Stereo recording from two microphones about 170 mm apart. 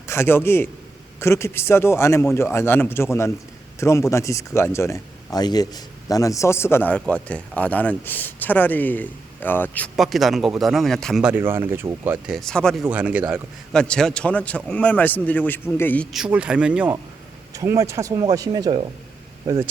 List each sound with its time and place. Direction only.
0.1 s speech: 15° left (ahead or behind)
9.9 s speech: centre (ahead or behind)
12.9 s speech: 10° right (ahead or behind)
13.7 s speech: 5° left (ahead or behind)
16.1 s speech: 5° right (ahead or behind)
17.5 s speech: 20° right (ahead or behind)